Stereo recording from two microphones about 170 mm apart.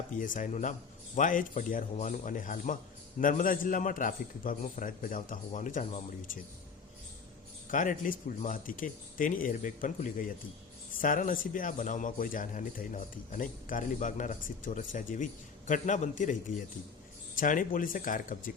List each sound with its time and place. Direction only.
0.2 s a man's voice: 50° left (ahead or behind)
7.7 s a man's voice: 50° left (ahead or behind)